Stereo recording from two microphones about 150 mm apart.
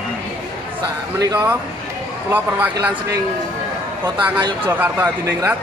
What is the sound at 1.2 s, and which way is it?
Speech, 25° right (ahead or behind).